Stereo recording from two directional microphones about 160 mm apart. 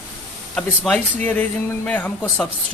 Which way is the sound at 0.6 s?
5° left (ahead or behind).